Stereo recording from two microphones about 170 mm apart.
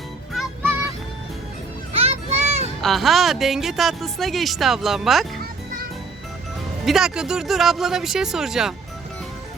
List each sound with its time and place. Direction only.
0.3 s music: 10° right (ahead or behind)
1.9 s music: 35° right (ahead or behind)
2.8 s a woman's voice: centre (ahead or behind)
6.8 s a woman's voice: 5° right (ahead or behind)